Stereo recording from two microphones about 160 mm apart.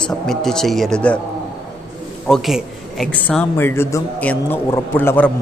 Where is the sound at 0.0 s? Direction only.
Centre (ahead or behind).